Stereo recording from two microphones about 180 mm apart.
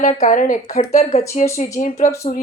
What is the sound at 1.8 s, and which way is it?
Speech, 50° left (ahead or behind).